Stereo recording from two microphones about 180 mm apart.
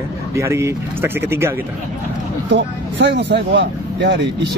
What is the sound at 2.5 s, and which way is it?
Speech, 75° right (ahead or behind).